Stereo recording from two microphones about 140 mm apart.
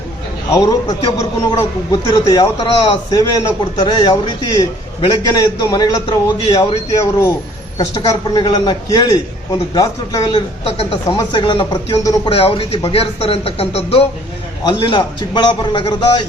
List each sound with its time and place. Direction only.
0.5 s a man's voice: 25° left (ahead or behind); by 14.1 s 45° left (ahead or behind)
14.7 s a man's voice: 35° left (ahead or behind)